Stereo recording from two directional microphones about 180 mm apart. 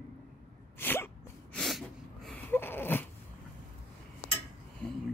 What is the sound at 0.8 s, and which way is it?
Sneeze, 10° left (ahead or behind).